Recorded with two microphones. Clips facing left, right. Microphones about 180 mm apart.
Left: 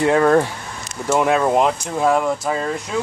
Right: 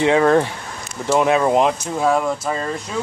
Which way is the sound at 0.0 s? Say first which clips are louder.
Even; centre (ahead or behind).